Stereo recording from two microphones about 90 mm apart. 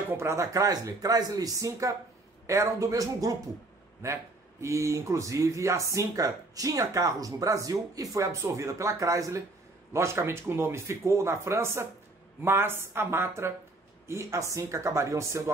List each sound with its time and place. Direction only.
0.1 s speech: 30° right (ahead or behind)